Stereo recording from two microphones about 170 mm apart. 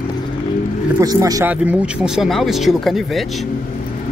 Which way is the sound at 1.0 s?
20° right (ahead or behind).